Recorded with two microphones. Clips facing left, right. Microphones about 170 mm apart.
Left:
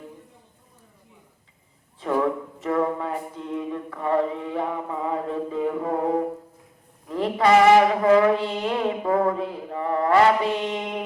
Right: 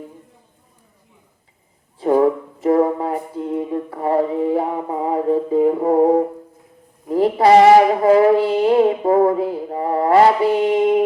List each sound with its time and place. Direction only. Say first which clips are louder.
2.0 s a sound: right 8 dB; 35° right (ahead or behind)
7.1 s speech: right 6 dB; 35° right (ahead or behind)
8.4 s mantra: right 10 dB; 30° right (ahead or behind)